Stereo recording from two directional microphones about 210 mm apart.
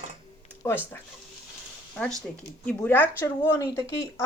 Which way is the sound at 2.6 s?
10° left (ahead or behind).